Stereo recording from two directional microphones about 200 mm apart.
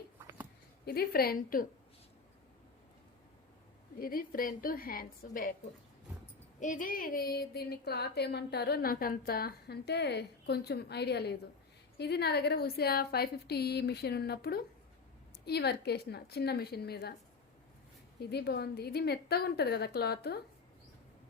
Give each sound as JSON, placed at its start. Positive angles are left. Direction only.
{"t": 0.9, "sound": "speech", "side_deg": 50}
{"t": 4.0, "sound": "speech", "side_deg": 45}
{"t": 6.6, "sound": "speech", "side_deg": 40}
{"t": 18.2, "sound": "speech", "side_deg": 55}